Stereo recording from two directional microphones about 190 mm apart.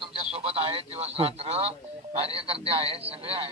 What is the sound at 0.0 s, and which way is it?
Radio, 30° right (ahead or behind).